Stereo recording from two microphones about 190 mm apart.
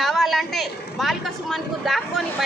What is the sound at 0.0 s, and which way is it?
A woman's voice, centre (ahead or behind).